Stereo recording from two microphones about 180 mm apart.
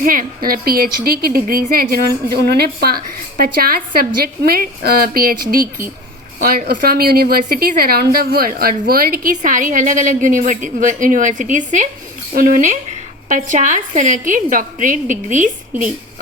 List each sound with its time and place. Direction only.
0.0 s a woman's voice: 50° right (ahead or behind)